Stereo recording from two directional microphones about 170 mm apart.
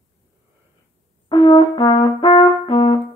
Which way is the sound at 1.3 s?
25° left (ahead or behind).